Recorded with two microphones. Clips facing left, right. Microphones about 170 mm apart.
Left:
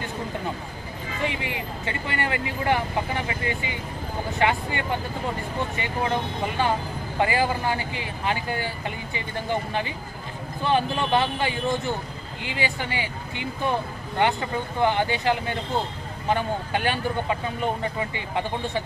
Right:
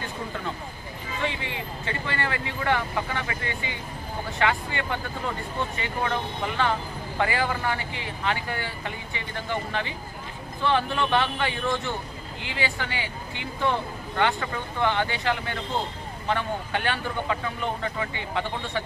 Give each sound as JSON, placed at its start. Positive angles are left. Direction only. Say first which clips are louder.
{"t": 1.2, "sound": "speech", "louder": "left 2 dB", "side_deg": 15}
{"t": 12.5, "sound": "speech", "louder": "left 2 dB", "side_deg": 20}